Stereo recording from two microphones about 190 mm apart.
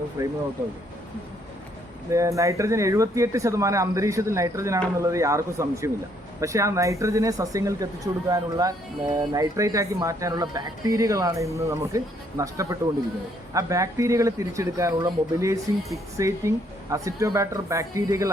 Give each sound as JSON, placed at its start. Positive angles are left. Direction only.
{"t": 0.2, "sound": "speech", "side_deg": -15}
{"t": 2.0, "sound": "speech", "side_deg": -15}